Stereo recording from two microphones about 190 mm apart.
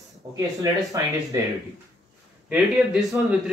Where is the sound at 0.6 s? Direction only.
15° right (ahead or behind).